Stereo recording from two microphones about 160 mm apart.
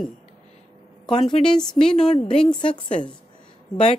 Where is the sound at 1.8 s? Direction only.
40° left (ahead or behind).